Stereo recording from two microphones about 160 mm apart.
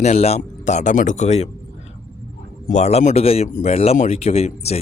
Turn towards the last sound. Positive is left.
turn(degrees=40)  # may be behind; listen again after turning